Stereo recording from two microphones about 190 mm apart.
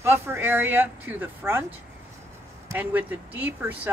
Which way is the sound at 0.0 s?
10° right (ahead or behind).